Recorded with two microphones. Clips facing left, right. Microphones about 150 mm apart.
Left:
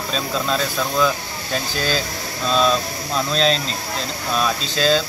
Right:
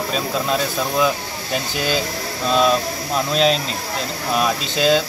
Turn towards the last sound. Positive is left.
turn(degrees=-15)  # may be behind; listen again after turning